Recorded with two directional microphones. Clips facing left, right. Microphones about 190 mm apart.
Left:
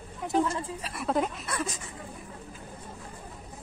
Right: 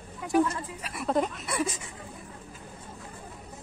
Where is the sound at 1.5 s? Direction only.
10° right (ahead or behind).